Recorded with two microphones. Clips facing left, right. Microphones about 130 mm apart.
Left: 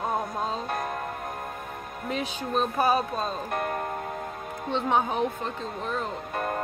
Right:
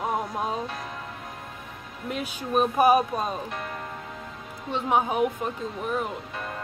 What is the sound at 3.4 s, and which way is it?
Speech, 50° left (ahead or behind).